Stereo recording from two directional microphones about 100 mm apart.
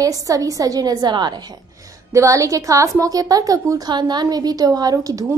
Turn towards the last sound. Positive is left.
turn(degrees=-35)  # may be behind; listen again after turning